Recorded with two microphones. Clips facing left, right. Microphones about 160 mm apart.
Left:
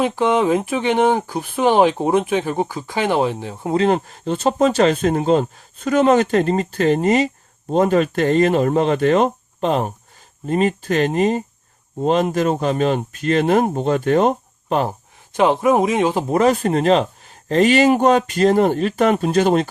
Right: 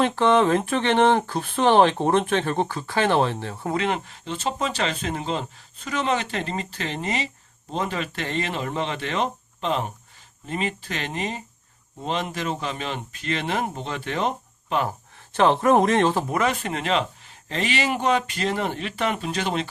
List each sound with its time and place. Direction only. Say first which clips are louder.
0.0 s speech: left 2 dB; 10° left (ahead or behind)
3.8 s speech: left 10 dB; 40° left (ahead or behind)
15.3 s speech: left 3 dB; 10° left (ahead or behind)
16.3 s speech: left 9 dB; 35° left (ahead or behind)